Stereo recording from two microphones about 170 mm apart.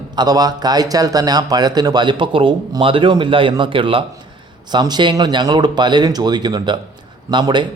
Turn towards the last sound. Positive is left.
turn(degrees=-25)  # may be behind; listen again after turning